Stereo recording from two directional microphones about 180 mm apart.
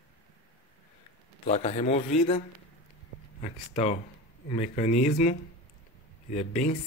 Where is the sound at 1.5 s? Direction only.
35° left (ahead or behind).